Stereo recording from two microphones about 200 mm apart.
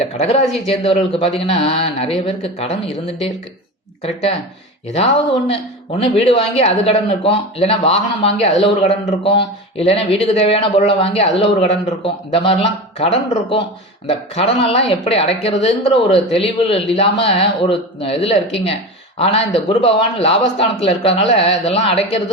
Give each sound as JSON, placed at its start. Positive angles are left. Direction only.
{"t": 0.7, "sound": "speech", "side_deg": 30}